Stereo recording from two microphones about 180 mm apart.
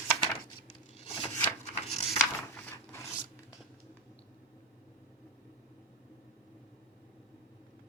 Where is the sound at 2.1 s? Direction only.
15° left (ahead or behind).